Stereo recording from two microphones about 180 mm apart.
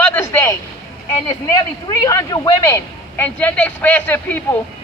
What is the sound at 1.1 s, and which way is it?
A woman's voice, 20° left (ahead or behind).